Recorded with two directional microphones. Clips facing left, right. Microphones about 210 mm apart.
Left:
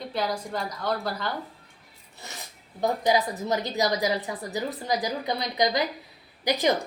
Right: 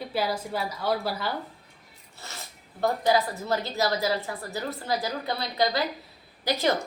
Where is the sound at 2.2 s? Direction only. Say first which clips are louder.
Even; 15° left (ahead or behind).